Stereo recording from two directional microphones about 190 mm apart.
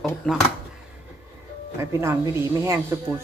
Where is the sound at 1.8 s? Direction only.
15° right (ahead or behind).